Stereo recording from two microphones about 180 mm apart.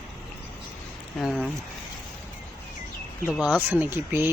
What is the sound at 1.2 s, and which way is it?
Speech, centre (ahead or behind).